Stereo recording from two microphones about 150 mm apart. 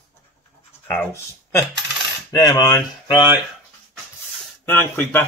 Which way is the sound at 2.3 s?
25° left (ahead or behind).